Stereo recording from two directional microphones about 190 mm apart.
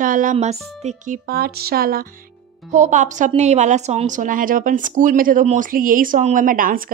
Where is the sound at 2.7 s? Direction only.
40° right (ahead or behind).